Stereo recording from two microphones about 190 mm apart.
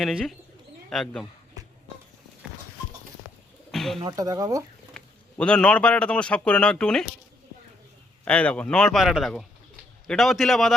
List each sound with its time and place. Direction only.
0.0 s speech: centre (ahead or behind)
3.7 s bird: centre (ahead or behind)
4.0 s speech: 20° right (ahead or behind)
4.9 s a man's voice: 5° left (ahead or behind)
8.2 s speech: 5° left (ahead or behind)